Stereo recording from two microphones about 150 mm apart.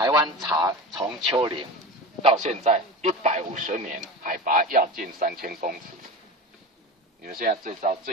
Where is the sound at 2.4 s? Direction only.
55° right (ahead or behind); by 5.8 s 70° right (ahead or behind).